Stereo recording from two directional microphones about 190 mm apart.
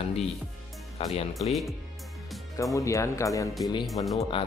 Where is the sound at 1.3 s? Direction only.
Centre (ahead or behind).